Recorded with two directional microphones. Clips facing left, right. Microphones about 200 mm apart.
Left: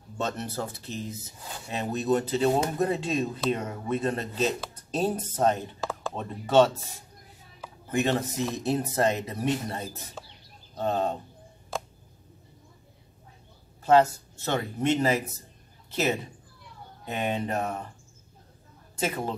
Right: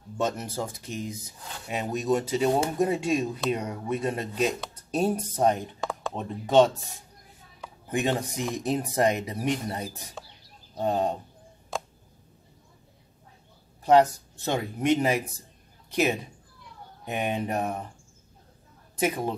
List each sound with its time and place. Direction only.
0.2 s speech: 10° right (ahead or behind)
5.8 s a sound: 5° left (ahead or behind)
6.1 s speech: 15° right (ahead or behind)
7.9 s speech: 15° right (ahead or behind)
13.8 s speech: 15° right (ahead or behind)
18.9 s speech: 15° right (ahead or behind)